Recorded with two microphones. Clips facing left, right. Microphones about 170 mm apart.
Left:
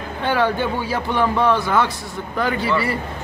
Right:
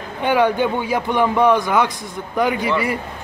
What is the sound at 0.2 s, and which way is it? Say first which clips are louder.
Speech: right 3 dB; 15° right (ahead or behind).